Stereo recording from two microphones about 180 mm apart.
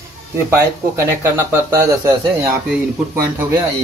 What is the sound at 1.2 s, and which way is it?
Speech, 15° right (ahead or behind).